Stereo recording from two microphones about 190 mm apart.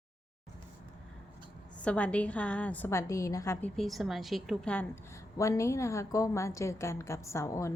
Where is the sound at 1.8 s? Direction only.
5° left (ahead or behind).